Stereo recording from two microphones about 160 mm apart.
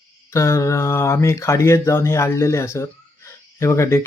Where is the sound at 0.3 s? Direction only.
20° left (ahead or behind).